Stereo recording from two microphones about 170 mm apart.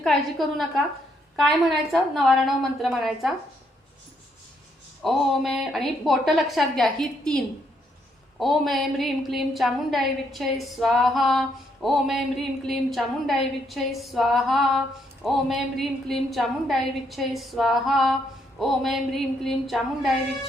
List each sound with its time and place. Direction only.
0.0 s a woman's voice: centre (ahead or behind)
5.0 s a woman's voice: centre (ahead or behind)